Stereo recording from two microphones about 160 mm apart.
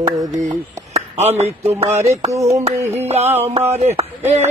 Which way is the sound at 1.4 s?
40° right (ahead or behind).